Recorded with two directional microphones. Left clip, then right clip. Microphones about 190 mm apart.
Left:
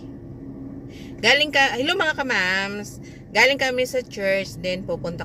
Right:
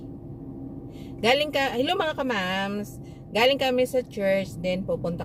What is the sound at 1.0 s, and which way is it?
A woman's voice, 10° right (ahead or behind).